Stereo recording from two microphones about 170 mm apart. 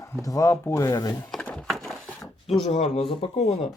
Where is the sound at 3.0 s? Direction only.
35° left (ahead or behind).